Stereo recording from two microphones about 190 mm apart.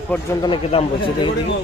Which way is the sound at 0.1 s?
10° left (ahead or behind).